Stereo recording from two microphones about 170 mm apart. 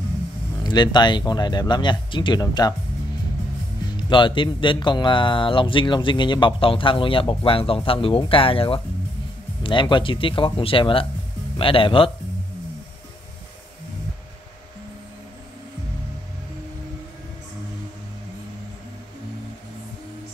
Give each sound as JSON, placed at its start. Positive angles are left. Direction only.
{"t": 0.7, "sound": "speech", "side_deg": 25}
{"t": 3.9, "sound": "speech", "side_deg": 30}